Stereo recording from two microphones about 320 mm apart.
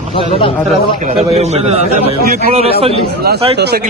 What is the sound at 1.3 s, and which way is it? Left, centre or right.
A man's voice, centre.